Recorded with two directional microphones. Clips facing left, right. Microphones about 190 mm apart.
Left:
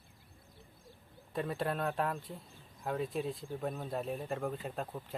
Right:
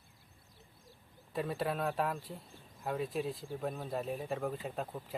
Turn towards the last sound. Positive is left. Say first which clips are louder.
# even
turn(degrees=0)  # may be behind; listen again after turning